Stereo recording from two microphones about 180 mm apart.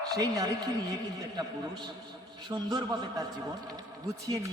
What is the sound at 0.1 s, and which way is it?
A man's voice, 20° right (ahead or behind).